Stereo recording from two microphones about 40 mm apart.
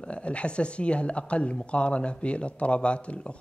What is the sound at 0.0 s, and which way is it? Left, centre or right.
Speech, left.